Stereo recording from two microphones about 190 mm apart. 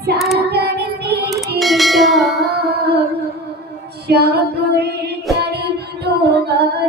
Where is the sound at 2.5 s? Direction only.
55° right (ahead or behind).